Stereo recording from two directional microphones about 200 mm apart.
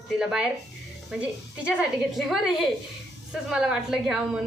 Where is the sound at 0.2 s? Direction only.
Centre (ahead or behind).